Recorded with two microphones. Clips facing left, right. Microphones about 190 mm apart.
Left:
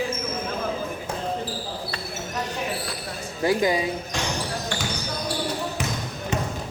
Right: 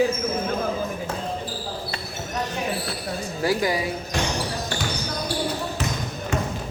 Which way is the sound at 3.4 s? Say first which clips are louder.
Left 2 dB; 20° left (ahead or behind).